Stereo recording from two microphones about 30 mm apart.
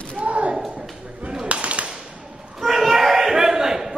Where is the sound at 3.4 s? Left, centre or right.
Centre.